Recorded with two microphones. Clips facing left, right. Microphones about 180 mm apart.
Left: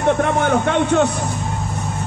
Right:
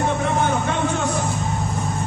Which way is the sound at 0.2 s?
65° left (ahead or behind).